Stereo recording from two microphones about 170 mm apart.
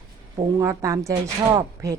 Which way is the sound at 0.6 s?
20° right (ahead or behind).